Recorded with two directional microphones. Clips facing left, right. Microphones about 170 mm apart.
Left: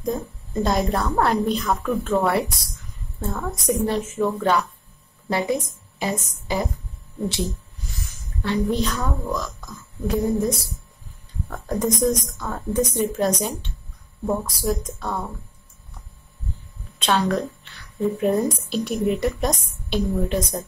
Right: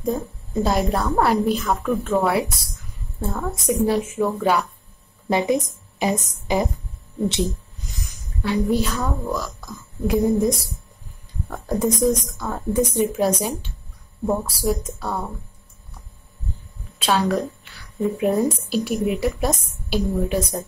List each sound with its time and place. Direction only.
0.0 s a woman's voice: 5° right (ahead or behind)
7.9 s a woman's voice: 15° right (ahead or behind)
17.0 s a woman's voice: 5° right (ahead or behind)